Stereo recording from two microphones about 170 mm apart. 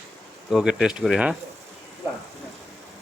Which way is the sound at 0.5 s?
5° right (ahead or behind).